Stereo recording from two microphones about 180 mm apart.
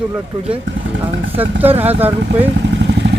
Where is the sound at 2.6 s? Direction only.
80° right.